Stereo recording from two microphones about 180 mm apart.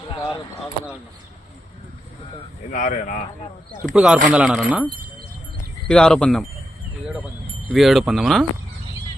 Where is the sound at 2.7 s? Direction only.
50° left (ahead or behind).